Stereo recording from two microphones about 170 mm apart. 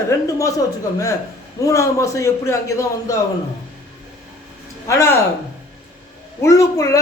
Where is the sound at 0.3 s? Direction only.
20° left (ahead or behind).